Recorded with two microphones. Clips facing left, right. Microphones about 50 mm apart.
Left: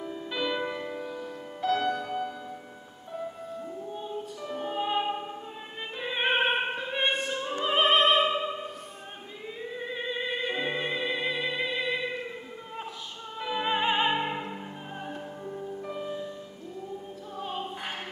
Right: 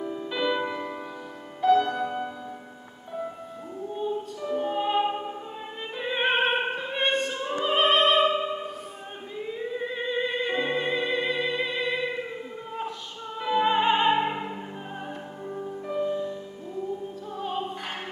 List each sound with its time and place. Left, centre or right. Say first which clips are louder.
0.0 s music: right 4 dB; centre
4.4 s music: right 4 dB; centre
5.9 s opera: right 2 dB; centre
9.8 s music: right 4 dB; centre
13.4 s opera: right 5 dB; centre
15.0 s music: right 1 dB; centre
15.9 s music: right 9 dB; centre
17.4 s music: right 4 dB; centre